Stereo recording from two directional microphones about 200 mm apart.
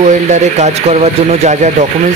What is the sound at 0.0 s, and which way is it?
Speech, 35° right (ahead or behind).